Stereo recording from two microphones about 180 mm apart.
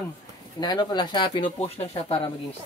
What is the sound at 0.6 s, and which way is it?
Speech, 25° left (ahead or behind).